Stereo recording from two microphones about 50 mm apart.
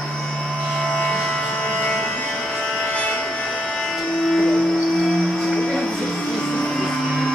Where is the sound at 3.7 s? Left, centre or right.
Centre.